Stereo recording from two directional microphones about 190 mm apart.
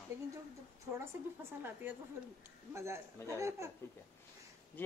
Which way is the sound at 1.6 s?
10° right (ahead or behind).